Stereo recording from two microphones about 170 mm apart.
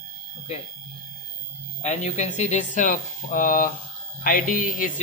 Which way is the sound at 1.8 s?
45° left (ahead or behind).